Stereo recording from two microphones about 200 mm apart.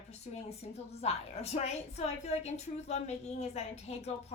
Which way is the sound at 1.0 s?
30° left (ahead or behind).